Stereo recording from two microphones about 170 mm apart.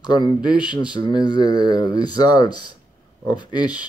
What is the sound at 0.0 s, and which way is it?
Speech, 25° left (ahead or behind).